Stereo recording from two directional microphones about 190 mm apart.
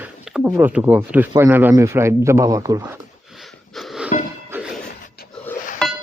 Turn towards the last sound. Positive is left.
turn(degrees=5)  # may be behind; listen again after turning